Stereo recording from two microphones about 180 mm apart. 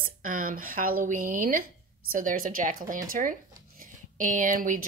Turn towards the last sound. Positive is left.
turn(degrees=-50)  # may be behind; listen again after turning